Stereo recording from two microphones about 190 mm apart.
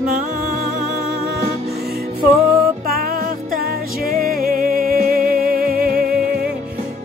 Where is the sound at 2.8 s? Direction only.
50° right (ahead or behind).